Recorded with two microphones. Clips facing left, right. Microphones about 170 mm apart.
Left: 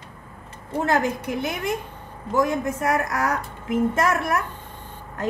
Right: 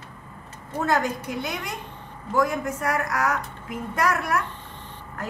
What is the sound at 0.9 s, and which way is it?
Speech, 25° left (ahead or behind).